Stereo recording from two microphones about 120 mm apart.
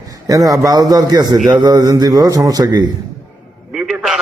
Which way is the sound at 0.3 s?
30° right (ahead or behind).